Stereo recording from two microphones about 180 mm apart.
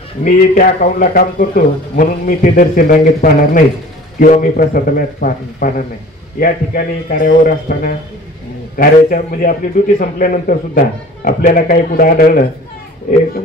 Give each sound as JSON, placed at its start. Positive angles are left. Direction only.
{"t": 0.2, "sound": "a man's voice", "side_deg": 50}